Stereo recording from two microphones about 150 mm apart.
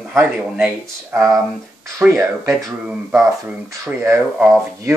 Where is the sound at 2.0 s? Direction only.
15° right (ahead or behind).